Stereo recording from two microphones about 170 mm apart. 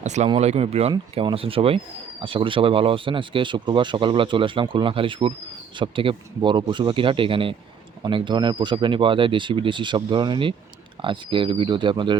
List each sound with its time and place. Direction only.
0.0 s speech: 45° right (ahead or behind)